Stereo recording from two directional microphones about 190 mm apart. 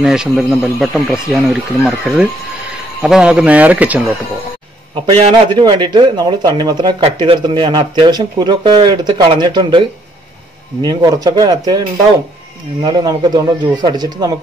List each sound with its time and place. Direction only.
0.0 s speech: 5° right (ahead or behind)
5.2 s speech: 25° right (ahead or behind)
12.8 s speech: 20° right (ahead or behind)